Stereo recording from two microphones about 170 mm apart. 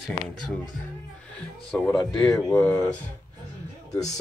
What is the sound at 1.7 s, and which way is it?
Speech, centre (ahead or behind).